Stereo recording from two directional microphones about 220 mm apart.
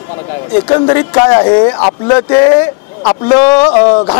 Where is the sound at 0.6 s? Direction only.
25° left (ahead or behind).